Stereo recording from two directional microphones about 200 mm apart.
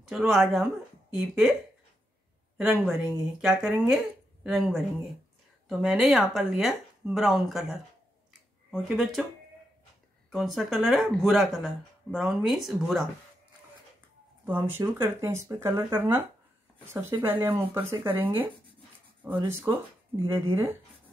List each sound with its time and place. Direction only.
0.0 s speech: centre (ahead or behind)
2.5 s speech: centre (ahead or behind)
10.3 s speech: centre (ahead or behind)
14.4 s speech: 10° right (ahead or behind)